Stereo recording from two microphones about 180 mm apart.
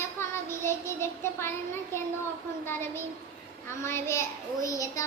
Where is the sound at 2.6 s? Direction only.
15° left (ahead or behind).